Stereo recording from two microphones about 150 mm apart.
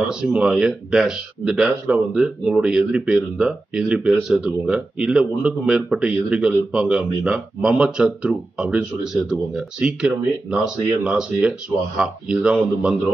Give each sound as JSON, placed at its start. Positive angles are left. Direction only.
{"t": 0.1, "sound": "speech", "side_deg": -5}